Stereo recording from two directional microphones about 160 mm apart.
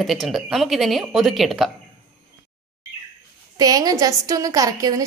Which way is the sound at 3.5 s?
25° right (ahead or behind).